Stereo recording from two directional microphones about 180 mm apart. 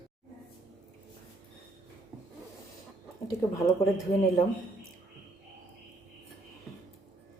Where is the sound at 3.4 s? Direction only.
15° left (ahead or behind).